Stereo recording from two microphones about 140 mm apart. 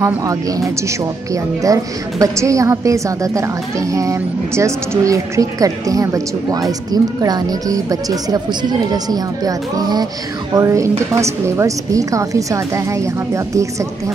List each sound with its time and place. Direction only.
0.0 s a woman's voice: 25° right (ahead or behind)